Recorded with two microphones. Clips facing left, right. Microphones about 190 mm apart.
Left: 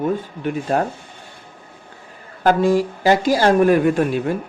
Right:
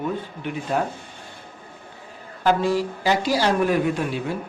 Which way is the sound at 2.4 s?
50° left (ahead or behind).